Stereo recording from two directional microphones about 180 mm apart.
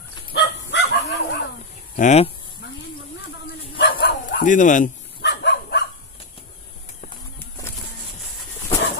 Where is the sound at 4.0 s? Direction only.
75° left (ahead or behind).